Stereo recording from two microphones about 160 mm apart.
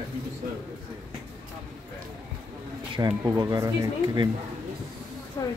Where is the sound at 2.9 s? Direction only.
25° right (ahead or behind).